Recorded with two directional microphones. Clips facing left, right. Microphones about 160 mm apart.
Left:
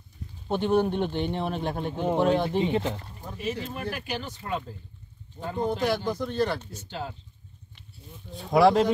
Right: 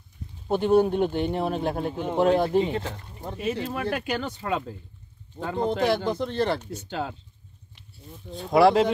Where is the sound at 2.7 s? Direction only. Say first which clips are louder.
Left 3 dB; 20° left (ahead or behind).